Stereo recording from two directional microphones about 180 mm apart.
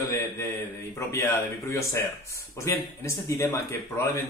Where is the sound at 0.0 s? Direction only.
15° left (ahead or behind).